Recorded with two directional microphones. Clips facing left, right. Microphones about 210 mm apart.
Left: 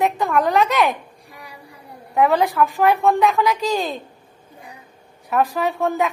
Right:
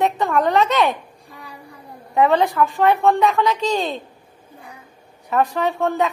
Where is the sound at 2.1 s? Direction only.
Centre (ahead or behind).